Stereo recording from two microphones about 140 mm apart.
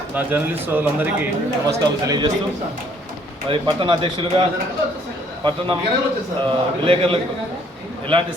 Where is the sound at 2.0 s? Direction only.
25° right (ahead or behind).